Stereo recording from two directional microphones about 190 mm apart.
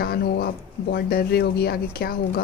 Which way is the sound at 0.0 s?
55° left (ahead or behind).